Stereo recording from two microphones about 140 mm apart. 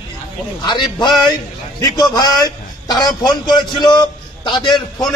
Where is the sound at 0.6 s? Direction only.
30° left (ahead or behind).